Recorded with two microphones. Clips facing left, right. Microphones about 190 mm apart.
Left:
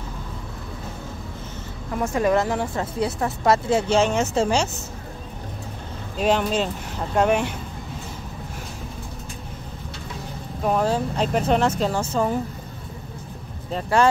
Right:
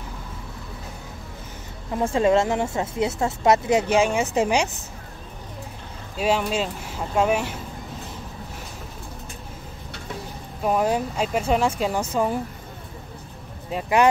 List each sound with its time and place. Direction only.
1.9 s speech: 25° right (ahead or behind)
6.1 s speech: 5° right (ahead or behind)
10.6 s speech: 10° right (ahead or behind)
13.7 s speech: 10° right (ahead or behind)